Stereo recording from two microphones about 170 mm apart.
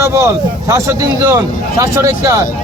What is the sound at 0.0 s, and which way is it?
A man's voice, 15° right (ahead or behind).